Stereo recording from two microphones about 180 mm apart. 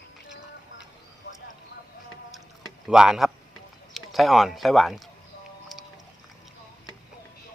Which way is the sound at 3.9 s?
Centre (ahead or behind).